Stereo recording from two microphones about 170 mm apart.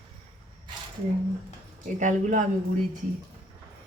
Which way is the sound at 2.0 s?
45° right (ahead or behind).